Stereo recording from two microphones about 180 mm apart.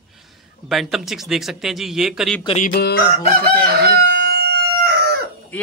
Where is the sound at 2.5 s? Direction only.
40° left (ahead or behind).